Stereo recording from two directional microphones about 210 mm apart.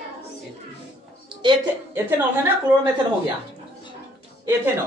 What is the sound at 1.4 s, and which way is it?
Speech, 20° right (ahead or behind).